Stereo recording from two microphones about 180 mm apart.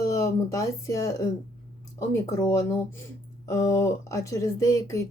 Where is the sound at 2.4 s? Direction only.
15° left (ahead or behind).